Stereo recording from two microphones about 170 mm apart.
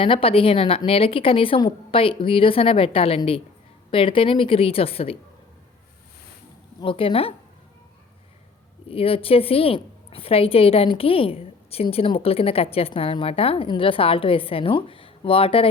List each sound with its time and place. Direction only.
0.0 s a woman's voice: 30° left (ahead or behind)
6.7 s a woman's voice: 30° left (ahead or behind)
8.9 s a woman's voice: 35° left (ahead or behind)